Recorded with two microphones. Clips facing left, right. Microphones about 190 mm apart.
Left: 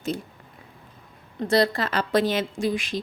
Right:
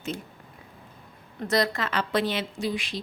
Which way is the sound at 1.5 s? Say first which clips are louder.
Left 4 dB; 30° left (ahead or behind).